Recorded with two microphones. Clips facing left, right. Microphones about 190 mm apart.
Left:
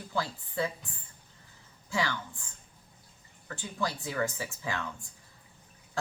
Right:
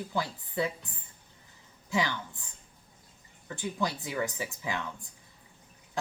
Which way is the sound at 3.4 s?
20° right (ahead or behind).